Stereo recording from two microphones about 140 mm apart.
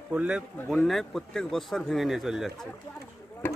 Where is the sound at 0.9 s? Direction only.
Centre (ahead or behind).